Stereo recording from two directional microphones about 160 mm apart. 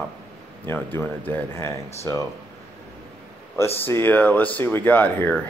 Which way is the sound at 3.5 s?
15° left (ahead or behind).